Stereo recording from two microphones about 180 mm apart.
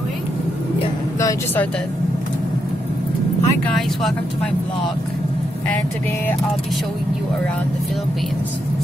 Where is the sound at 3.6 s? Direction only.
Centre (ahead or behind).